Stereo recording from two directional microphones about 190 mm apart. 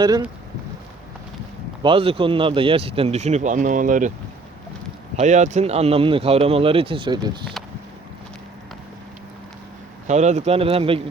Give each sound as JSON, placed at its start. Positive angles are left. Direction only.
{"t": 1.8, "sound": "speech", "side_deg": -30}
{"t": 5.2, "sound": "speech", "side_deg": -40}
{"t": 10.1, "sound": "speech", "side_deg": -35}